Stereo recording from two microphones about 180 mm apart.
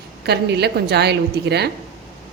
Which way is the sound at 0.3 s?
65° right (ahead or behind).